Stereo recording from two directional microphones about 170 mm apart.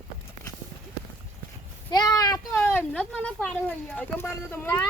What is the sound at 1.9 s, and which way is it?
A woman's voice, 25° left (ahead or behind).